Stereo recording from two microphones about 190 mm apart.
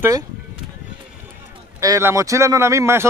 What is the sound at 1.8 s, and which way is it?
Speech, 15° right (ahead or behind).